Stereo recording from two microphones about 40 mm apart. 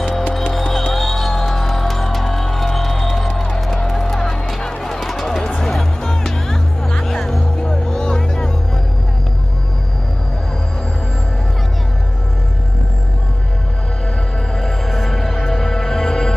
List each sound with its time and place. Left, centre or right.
0.7 s music: centre
14.6 s music: centre